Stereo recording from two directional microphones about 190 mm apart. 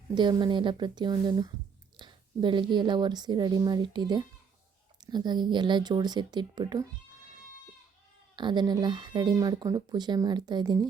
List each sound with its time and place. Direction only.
0.1 s speech: 25° right (ahead or behind)
8.4 s speech: 25° right (ahead or behind)